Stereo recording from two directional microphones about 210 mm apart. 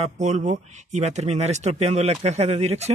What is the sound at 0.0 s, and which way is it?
Speech, 35° right (ahead or behind).